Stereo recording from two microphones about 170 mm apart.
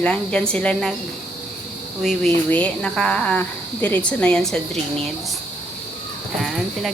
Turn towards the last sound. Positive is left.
turn(degrees=0)  # may be behind; listen again after turning